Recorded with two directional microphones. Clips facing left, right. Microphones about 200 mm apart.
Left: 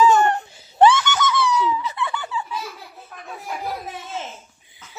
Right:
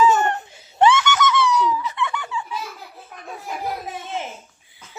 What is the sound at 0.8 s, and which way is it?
Screaming, 35° left (ahead or behind).